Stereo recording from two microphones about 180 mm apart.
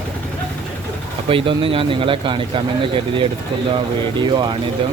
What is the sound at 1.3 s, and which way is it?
Speech, 30° right (ahead or behind).